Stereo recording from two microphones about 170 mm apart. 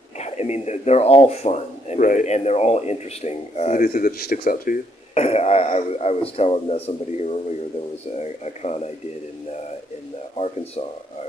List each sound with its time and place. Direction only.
0.2 s speech: 40° left (ahead or behind)
5.1 s speech: 35° left (ahead or behind)
10.3 s speech: 40° left (ahead or behind)